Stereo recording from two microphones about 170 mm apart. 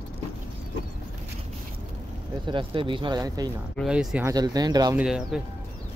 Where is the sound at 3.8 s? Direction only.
5° right (ahead or behind).